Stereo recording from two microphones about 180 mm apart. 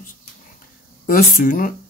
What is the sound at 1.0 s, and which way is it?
Speech, 50° left (ahead or behind).